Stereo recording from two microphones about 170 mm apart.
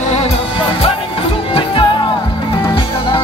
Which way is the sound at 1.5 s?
30° left (ahead or behind).